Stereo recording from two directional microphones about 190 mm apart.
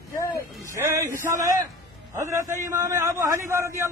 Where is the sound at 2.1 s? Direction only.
15° right (ahead or behind).